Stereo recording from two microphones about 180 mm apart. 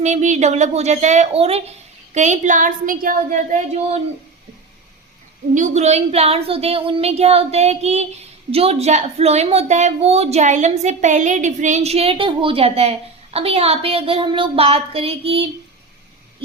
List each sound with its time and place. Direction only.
0.0 s speech: 40° right (ahead or behind)
5.5 s speech: 40° right (ahead or behind)